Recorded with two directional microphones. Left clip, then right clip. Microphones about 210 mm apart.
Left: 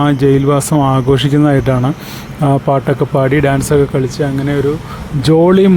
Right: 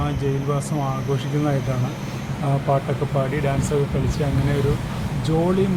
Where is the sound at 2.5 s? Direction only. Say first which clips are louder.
Left 9 dB; 40° left (ahead or behind).